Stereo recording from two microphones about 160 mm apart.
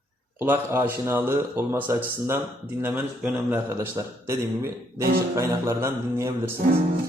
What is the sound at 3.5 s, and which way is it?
A man's voice, 15° right (ahead or behind).